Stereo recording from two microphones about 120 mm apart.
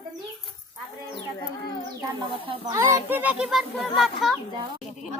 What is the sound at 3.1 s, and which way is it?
Speech, 15° right (ahead or behind).